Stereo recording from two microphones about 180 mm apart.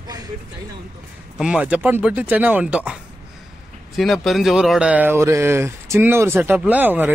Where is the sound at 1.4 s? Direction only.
5° right (ahead or behind).